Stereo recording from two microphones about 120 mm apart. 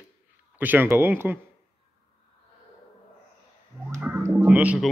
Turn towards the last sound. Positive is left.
turn(degrees=-10)  # may be behind; listen again after turning